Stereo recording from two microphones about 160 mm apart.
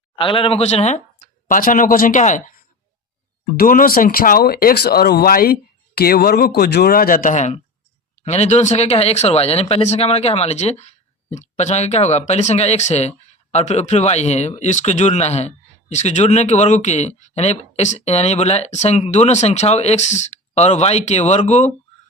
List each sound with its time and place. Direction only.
0.2 s speech: 35° left (ahead or behind)
1.5 s speech: 60° left (ahead or behind)
3.6 s speech: 60° left (ahead or behind); by 21.7 s 45° left (ahead or behind)